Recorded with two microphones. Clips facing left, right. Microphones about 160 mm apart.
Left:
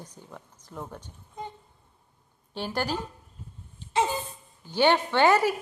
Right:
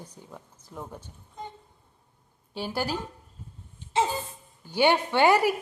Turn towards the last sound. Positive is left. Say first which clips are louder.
# even
turn(degrees=-15)  # may be behind; listen again after turning